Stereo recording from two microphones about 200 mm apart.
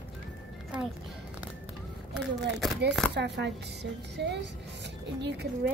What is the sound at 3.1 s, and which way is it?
Speech, 60° right (ahead or behind).